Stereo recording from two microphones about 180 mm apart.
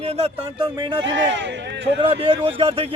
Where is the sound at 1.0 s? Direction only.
85° right.